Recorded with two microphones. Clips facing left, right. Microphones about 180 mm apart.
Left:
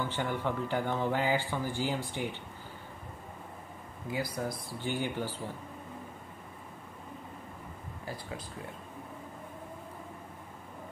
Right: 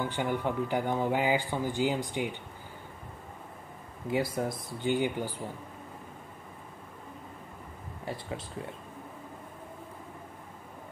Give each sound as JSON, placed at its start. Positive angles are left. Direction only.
{"t": 0.0, "sound": "speech", "side_deg": -15}
{"t": 4.1, "sound": "speech", "side_deg": -25}
{"t": 8.0, "sound": "speech", "side_deg": -25}